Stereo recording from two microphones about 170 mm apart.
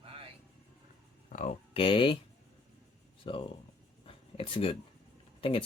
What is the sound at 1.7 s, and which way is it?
Speech, 30° left (ahead or behind).